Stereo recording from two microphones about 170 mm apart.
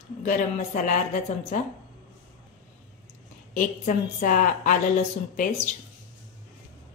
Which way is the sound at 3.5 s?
50° left (ahead or behind).